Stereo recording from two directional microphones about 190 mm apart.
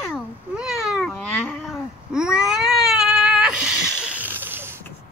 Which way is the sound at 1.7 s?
5° right (ahead or behind).